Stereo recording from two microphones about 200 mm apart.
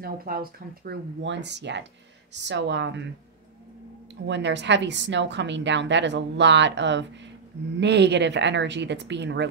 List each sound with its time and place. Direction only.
0.0 s speech: 50° right (ahead or behind)
1.2 s a woman's voice: 60° right (ahead or behind)
4.1 s a woman's voice: 60° right (ahead or behind)